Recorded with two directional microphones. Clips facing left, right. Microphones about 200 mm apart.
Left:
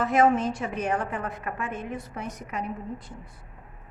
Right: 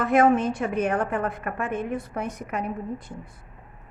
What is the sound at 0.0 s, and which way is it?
A woman's voice, 55° right (ahead or behind).